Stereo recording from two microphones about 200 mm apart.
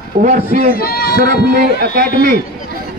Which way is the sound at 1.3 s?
50° right (ahead or behind).